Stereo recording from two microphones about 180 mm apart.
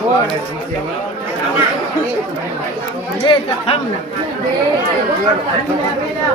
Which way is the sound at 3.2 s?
30° left (ahead or behind).